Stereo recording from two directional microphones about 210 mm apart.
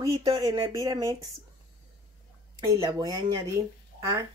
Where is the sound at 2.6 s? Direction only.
15° right (ahead or behind).